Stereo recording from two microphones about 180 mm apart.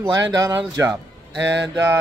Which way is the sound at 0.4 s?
15° right (ahead or behind).